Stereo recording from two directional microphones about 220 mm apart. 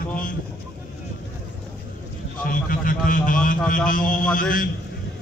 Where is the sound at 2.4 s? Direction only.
40° left (ahead or behind).